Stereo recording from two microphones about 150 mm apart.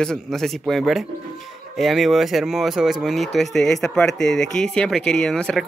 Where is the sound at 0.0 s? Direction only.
5° left (ahead or behind).